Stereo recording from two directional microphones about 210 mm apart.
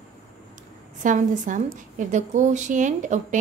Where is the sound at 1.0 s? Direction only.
35° right (ahead or behind).